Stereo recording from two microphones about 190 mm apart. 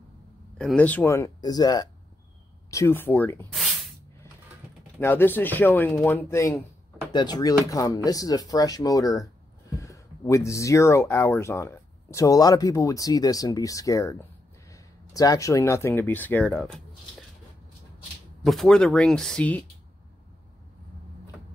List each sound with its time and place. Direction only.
0.6 s speech: 5° left (ahead or behind)
3.5 s spray: centre (ahead or behind)
5.0 s speech: 10° left (ahead or behind)
7.1 s speech: 25° left (ahead or behind); by 16.8 s 5° left (ahead or behind)
18.4 s speech: centre (ahead or behind)